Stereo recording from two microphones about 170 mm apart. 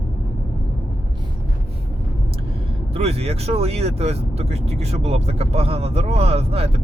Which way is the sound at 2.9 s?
35° right (ahead or behind).